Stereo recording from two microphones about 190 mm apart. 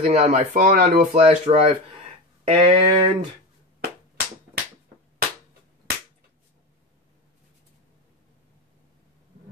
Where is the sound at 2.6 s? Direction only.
30° right (ahead or behind).